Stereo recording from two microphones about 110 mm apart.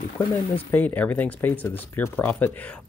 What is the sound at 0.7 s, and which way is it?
Speech, 15° left (ahead or behind).